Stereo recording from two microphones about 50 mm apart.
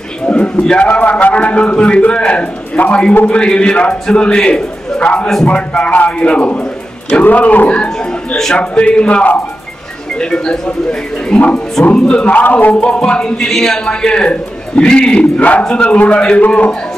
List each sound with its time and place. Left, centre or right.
0.3 s a man's voice: left
12.4 s a man's voice: left